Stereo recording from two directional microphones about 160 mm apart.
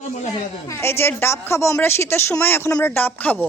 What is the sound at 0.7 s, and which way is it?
A woman's voice, 15° left (ahead or behind).